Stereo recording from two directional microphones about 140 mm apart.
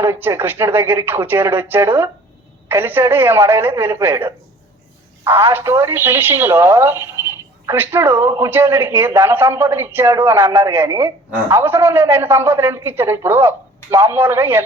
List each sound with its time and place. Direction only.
0.0 s speech: 15° right (ahead or behind)